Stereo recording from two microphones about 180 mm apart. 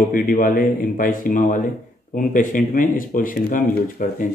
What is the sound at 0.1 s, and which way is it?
Speech, 50° left (ahead or behind).